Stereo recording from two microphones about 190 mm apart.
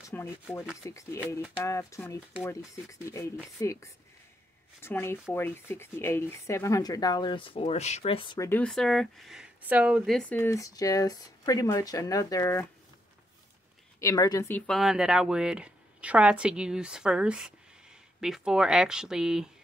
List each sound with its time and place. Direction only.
0.1 s speech: 10° left (ahead or behind); by 8.4 s 30° left (ahead or behind)
8.4 s speech: 10° left (ahead or behind)
13.9 s speech: 15° left (ahead or behind)
14.7 s a woman's voice: centre (ahead or behind)